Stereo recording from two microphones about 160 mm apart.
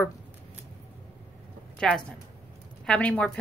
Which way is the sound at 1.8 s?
5° left (ahead or behind).